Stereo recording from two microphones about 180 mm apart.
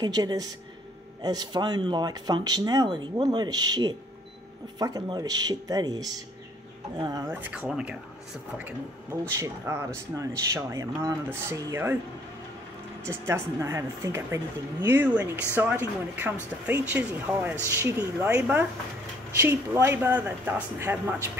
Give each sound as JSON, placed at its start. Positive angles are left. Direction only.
{"t": 0.0, "sound": "speech", "side_deg": -20}
{"t": 9.4, "sound": "speech", "side_deg": -15}
{"t": 13.3, "sound": "speech", "side_deg": -15}